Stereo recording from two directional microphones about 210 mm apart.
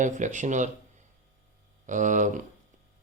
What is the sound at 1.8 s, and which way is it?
Speech, 35° right (ahead or behind).